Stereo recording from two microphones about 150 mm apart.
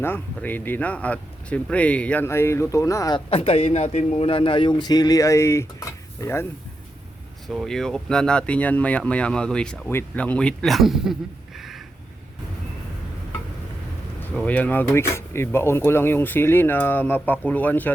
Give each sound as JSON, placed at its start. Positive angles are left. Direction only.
{"t": 0.0, "sound": "speech", "side_deg": 15}
{"t": 3.2, "sound": "a man's voice", "side_deg": 40}
{"t": 7.4, "sound": "speech", "side_deg": 0}
{"t": 14.3, "sound": "speech", "side_deg": 10}